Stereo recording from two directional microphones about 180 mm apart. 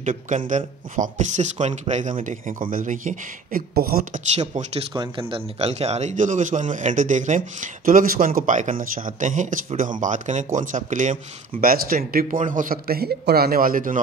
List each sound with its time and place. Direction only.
0.0 s a man's voice: 45° right (ahead or behind)
4.4 s speech: 40° right (ahead or behind)
4.9 s a man's voice: 25° right (ahead or behind); by 13.9 s 50° right (ahead or behind)